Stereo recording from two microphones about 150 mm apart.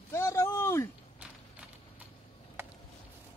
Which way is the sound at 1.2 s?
10° right (ahead or behind).